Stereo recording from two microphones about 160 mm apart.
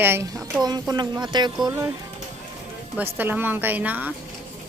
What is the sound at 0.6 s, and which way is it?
Speech, 25° right (ahead or behind).